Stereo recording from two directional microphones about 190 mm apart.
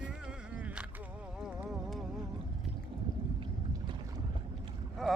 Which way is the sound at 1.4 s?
Centre (ahead or behind).